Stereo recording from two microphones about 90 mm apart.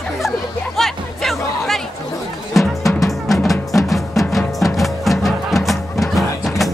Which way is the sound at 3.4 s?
Centre (ahead or behind).